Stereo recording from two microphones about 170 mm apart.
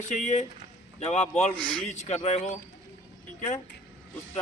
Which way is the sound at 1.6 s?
5° left (ahead or behind).